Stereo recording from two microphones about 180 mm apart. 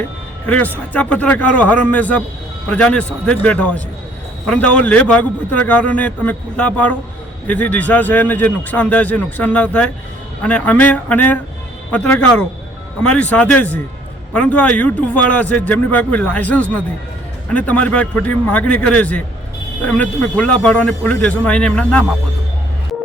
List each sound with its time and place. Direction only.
0.4 s a man's voice: 10° left (ahead or behind)